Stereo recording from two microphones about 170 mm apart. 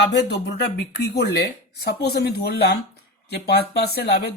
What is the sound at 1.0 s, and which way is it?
Speech, 75° left (ahead or behind).